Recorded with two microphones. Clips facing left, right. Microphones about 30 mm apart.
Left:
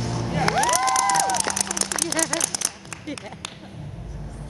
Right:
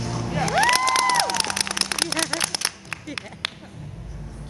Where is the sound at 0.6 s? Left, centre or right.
Right.